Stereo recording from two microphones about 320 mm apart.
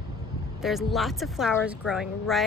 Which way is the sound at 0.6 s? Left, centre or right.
Centre.